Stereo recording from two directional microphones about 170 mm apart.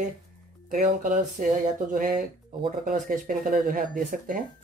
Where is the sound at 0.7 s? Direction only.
55° right (ahead or behind).